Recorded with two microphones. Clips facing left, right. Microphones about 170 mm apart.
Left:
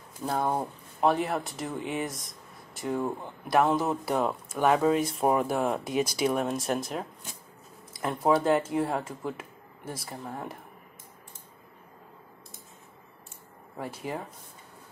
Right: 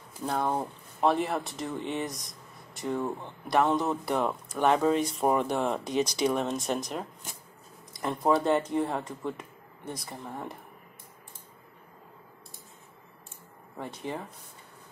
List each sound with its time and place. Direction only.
0.2 s speech: 10° left (ahead or behind)
13.7 s speech: 5° left (ahead or behind)